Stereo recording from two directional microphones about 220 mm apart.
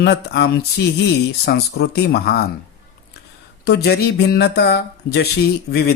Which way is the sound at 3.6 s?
45° left (ahead or behind).